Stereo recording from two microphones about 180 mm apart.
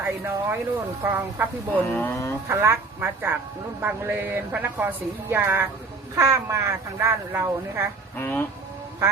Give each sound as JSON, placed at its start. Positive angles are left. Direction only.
{"t": 0.0, "sound": "speech", "side_deg": -10}
{"t": 1.9, "sound": "speech", "side_deg": 10}
{"t": 2.5, "sound": "speech", "side_deg": -15}
{"t": 8.2, "sound": "speech", "side_deg": 10}